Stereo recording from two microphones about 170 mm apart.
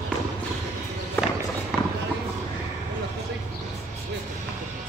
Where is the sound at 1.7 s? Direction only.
Centre (ahead or behind).